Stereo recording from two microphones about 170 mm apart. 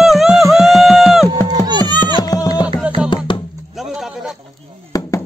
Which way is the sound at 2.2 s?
20° left (ahead or behind).